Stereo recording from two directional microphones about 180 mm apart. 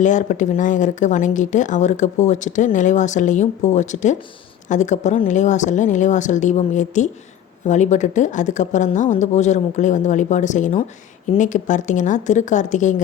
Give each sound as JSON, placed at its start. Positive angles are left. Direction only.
{"t": 0.0, "sound": "speech", "side_deg": 45}